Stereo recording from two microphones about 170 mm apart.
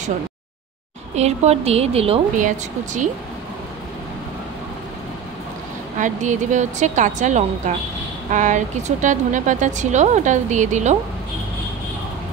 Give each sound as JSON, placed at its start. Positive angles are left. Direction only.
{"t": 1.1, "sound": "a woman's voice", "side_deg": -40}
{"t": 2.4, "sound": "speech", "side_deg": -45}
{"t": 5.9, "sound": "speech", "side_deg": -45}